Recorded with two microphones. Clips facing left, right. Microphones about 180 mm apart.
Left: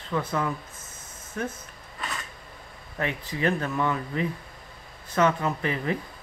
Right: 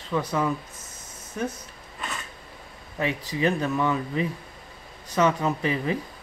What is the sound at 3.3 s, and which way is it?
Speech, 15° right (ahead or behind).